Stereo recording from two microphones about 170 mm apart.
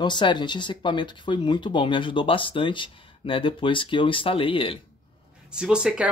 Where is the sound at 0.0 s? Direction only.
25° left (ahead or behind).